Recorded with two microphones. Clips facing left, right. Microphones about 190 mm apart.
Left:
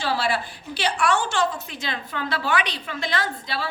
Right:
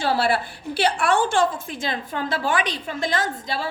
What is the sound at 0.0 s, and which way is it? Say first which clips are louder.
A woman's voice: right 3 dB; 55° right (ahead or behind).